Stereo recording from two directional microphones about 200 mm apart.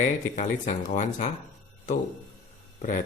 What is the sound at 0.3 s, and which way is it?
Speech, 40° left (ahead or behind).